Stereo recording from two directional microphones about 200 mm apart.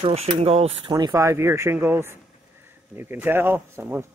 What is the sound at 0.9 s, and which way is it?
Speech, 20° right (ahead or behind).